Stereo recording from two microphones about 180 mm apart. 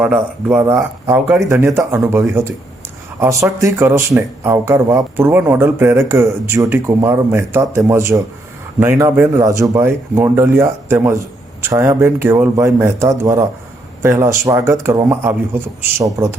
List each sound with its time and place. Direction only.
0.0 s speech: 5° right (ahead or behind)